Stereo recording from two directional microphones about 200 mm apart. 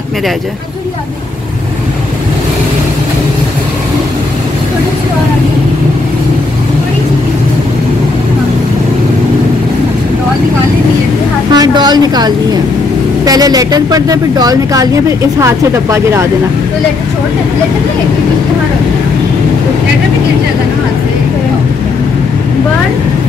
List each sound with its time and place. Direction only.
11.5 s speech: 20° right (ahead or behind)